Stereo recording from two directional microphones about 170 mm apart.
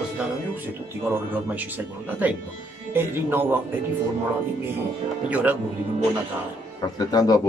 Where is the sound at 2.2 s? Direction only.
10° right (ahead or behind).